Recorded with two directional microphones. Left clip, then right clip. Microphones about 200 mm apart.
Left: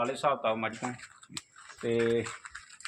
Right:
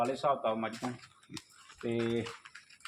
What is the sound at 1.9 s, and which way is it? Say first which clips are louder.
Speech: left 6 dB; 40° left (ahead or behind).